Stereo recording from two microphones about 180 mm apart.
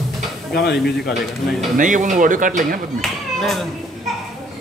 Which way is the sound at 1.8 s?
45° right (ahead or behind).